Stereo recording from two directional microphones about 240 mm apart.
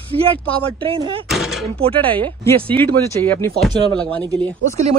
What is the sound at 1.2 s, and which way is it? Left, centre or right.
Door, centre.